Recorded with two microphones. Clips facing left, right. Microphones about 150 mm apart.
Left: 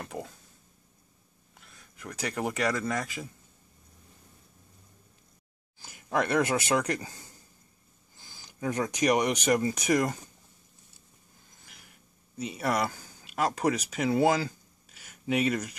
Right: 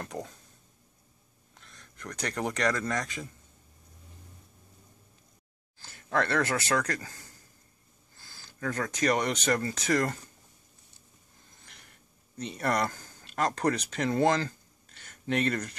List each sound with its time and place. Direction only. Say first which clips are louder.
0.0 s speech: even; 5° left (ahead or behind)
1.5 s speech: right 1 dB; 5° left (ahead or behind)
5.8 s speech: even; 10° left (ahead or behind)
11.6 s a sound: left 1 dB; 5° left (ahead or behind)